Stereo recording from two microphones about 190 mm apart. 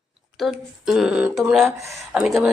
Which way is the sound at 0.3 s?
Centre (ahead or behind).